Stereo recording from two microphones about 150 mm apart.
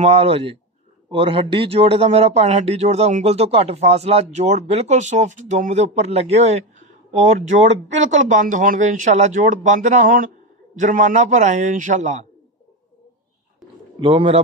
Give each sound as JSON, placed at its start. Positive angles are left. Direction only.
{"t": 0.0, "sound": "a man's voice", "side_deg": -40}
{"t": 13.9, "sound": "a man's voice", "side_deg": -35}